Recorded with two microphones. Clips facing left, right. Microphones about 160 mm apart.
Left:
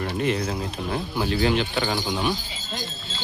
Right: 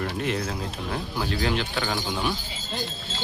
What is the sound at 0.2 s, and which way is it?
Speech, centre (ahead or behind).